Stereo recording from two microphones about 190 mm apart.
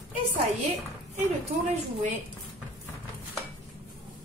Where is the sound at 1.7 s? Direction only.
40° right (ahead or behind).